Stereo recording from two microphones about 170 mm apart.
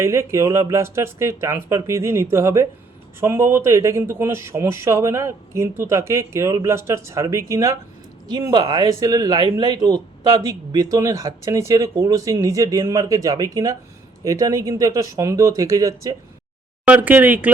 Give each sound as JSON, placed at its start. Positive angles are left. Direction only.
{"t": 0.0, "sound": "speech", "side_deg": -15}